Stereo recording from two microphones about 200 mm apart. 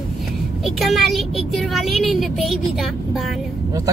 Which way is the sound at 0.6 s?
Centre (ahead or behind).